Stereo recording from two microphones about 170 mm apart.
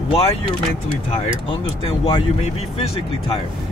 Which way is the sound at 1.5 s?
30° left (ahead or behind).